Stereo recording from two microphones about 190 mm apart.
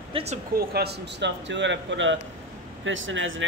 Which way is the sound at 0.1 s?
35° right (ahead or behind).